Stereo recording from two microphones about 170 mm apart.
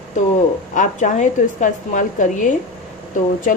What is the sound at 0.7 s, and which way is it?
Speech, 45° left (ahead or behind).